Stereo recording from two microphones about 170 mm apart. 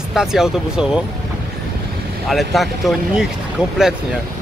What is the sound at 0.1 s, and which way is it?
Speech, centre (ahead or behind).